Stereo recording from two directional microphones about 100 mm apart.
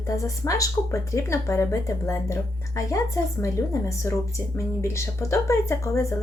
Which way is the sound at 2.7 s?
35° left (ahead or behind).